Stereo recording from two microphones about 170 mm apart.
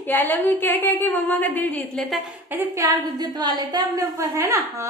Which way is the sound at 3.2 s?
25° right (ahead or behind).